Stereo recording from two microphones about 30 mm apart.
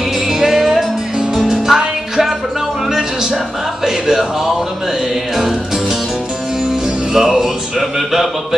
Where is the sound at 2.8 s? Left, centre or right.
Centre.